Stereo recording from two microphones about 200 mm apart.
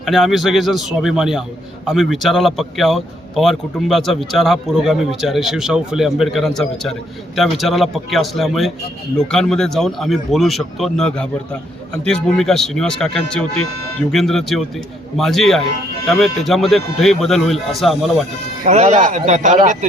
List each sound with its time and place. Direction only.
0.0 s a man's voice: centre (ahead or behind)
18.6 s speech: 35° right (ahead or behind)